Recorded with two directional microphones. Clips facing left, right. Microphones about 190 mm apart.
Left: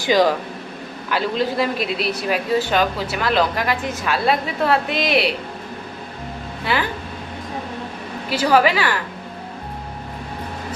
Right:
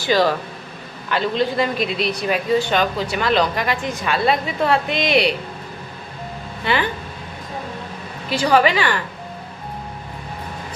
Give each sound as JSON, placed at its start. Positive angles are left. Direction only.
{"t": 0.0, "sound": "speech", "side_deg": 15}
{"t": 1.1, "sound": "speech", "side_deg": 5}
{"t": 6.7, "sound": "speech", "side_deg": 5}
{"t": 8.3, "sound": "speech", "side_deg": 5}